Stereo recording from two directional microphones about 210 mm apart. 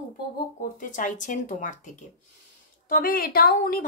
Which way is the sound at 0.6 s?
40° left (ahead or behind).